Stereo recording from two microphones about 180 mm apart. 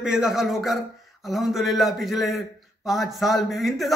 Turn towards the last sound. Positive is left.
turn(degrees=0)  # may be behind; listen again after turning